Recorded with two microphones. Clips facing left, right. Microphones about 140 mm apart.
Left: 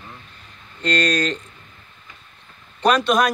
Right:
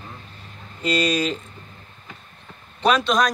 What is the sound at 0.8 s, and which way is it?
Speech, 10° right (ahead or behind).